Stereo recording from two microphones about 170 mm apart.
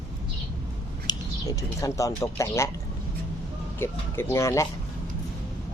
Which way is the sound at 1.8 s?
20° left (ahead or behind).